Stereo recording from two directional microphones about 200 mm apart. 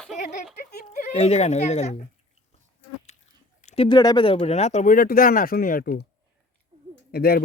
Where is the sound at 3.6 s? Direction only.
30° left (ahead or behind); by 6.0 s 45° left (ahead or behind).